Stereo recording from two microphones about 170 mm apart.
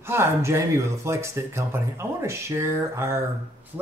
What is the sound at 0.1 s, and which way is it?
Speech, 15° right (ahead or behind).